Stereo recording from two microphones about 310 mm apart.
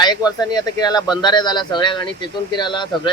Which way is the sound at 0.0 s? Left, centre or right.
Centre.